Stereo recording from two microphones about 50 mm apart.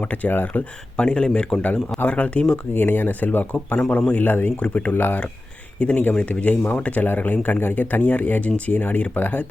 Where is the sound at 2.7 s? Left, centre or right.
Left.